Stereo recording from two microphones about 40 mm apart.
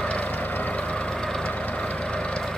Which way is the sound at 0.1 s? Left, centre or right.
Left.